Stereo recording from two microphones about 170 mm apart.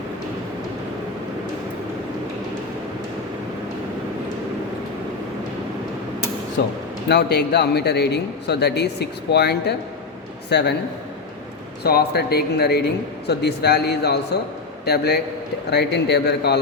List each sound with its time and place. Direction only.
7.1 s a man's voice: 75° left (ahead or behind)
11.8 s a man's voice: 65° left (ahead or behind)